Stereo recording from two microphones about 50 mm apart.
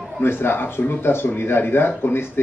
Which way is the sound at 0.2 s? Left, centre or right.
Left.